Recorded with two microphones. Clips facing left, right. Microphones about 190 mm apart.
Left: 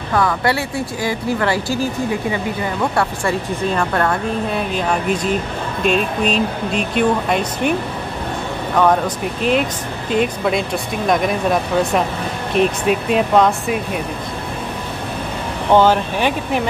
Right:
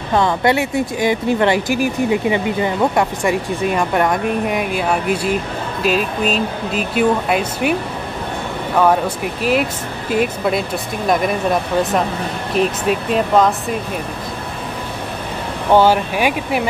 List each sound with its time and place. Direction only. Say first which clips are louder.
0.1 s speech: right 2 dB; 25° right (ahead or behind); by 7.7 s 5° right (ahead or behind)
8.7 s speech: right 1 dB; 5° right (ahead or behind)
12.5 s speech: left 1 dB; centre (ahead or behind)
15.7 s speech: right 1 dB; 10° right (ahead or behind)